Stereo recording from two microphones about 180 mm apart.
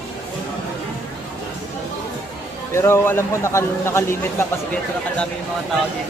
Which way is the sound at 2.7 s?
15° left (ahead or behind).